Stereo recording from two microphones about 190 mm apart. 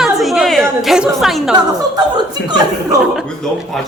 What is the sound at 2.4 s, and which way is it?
Speech, 20° right (ahead or behind).